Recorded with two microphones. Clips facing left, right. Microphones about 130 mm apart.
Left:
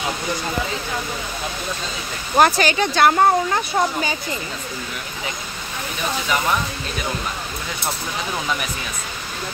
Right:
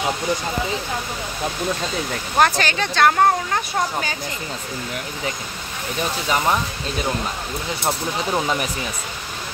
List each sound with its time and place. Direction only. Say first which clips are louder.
2.3 s speech: left 3 dB; 10° left (ahead or behind)
7.8 s speech: right 4 dB; 35° right (ahead or behind)